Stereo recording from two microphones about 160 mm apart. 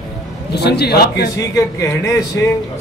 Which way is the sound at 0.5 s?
90° left.